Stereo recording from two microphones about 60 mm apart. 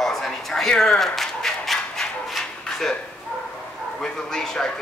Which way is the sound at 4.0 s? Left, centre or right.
Centre.